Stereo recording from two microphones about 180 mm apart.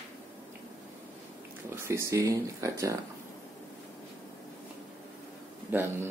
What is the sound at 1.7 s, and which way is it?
Speech, 15° right (ahead or behind).